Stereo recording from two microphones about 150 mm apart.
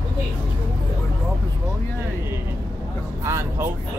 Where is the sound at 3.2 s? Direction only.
15° right (ahead or behind).